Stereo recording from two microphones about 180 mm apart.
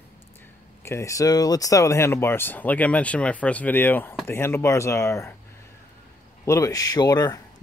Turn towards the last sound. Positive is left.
turn(degrees=20)  # may be behind; listen again after turning